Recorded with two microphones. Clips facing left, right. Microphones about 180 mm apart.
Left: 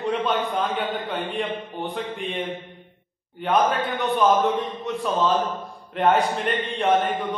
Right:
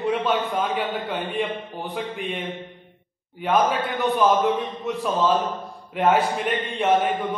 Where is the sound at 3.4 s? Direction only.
Centre (ahead or behind).